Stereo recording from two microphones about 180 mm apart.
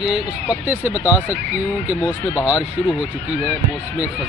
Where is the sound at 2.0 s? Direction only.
15° left (ahead or behind).